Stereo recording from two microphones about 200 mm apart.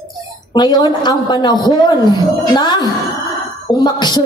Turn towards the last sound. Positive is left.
turn(degrees=20)  # may be behind; listen again after turning